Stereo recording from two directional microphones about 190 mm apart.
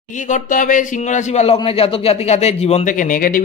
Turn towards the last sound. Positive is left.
turn(degrees=45)  # may be behind; listen again after turning